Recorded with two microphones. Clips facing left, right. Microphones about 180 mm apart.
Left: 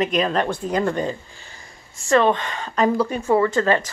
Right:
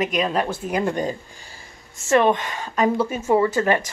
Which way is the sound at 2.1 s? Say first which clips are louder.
Even; 15° right (ahead or behind).